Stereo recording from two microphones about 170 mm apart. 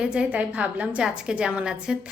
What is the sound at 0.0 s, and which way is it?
A woman's voice, 5° right (ahead or behind).